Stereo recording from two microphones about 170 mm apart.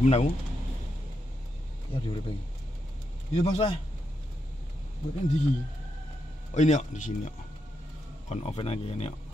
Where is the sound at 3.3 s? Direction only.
35° left (ahead or behind).